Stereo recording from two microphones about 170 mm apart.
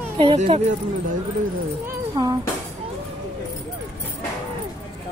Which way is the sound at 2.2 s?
25° right (ahead or behind).